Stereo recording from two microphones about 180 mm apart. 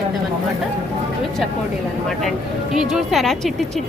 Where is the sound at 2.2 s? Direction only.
Centre (ahead or behind).